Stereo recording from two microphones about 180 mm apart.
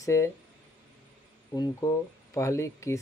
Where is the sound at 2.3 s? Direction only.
15° left (ahead or behind).